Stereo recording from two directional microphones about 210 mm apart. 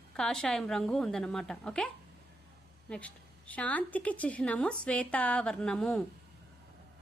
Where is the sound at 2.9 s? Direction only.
5° left (ahead or behind).